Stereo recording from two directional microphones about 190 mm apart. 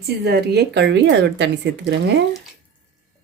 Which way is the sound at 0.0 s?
55° right (ahead or behind).